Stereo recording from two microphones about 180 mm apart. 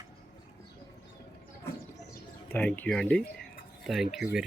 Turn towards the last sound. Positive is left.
turn(degrees=-5)  # may be behind; listen again after turning